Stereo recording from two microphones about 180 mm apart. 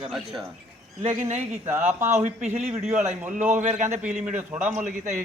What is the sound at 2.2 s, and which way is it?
Speech, 40° right (ahead or behind).